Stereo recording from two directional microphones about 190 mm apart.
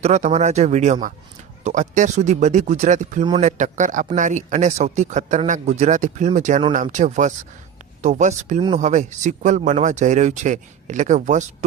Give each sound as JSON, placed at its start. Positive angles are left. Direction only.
{"t": 0.0, "sound": "a man's voice", "side_deg": -35}